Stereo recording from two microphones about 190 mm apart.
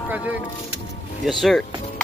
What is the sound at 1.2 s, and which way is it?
Speech, centre (ahead or behind).